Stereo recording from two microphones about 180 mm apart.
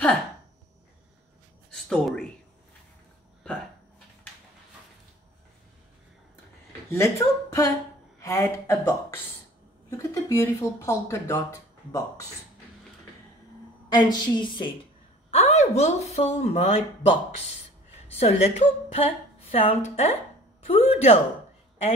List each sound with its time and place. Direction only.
1.7 s speech: 5° left (ahead or behind)
6.9 s speech: 15° left (ahead or behind)
13.8 s a woman's voice: 25° left (ahead or behind)
15.3 s a woman's voice: 35° left (ahead or behind)
18.2 s a woman's voice: 35° left (ahead or behind)